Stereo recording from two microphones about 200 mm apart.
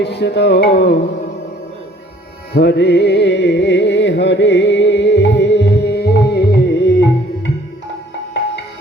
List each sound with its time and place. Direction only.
0.0 s music: 55° left (ahead or behind)
2.5 s music: 55° left (ahead or behind)